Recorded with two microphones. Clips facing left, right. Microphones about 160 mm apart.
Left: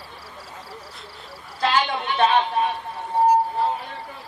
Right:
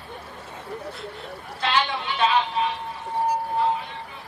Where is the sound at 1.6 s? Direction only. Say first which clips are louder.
Left 3 dB; 45° left (ahead or behind).